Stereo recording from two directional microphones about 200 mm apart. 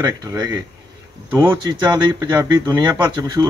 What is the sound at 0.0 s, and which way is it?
Speech, 20° right (ahead or behind).